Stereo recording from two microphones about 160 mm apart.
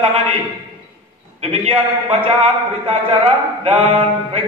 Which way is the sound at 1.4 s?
40° right (ahead or behind).